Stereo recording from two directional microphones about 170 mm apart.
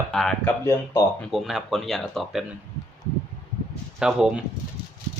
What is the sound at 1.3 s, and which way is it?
Speech, centre (ahead or behind).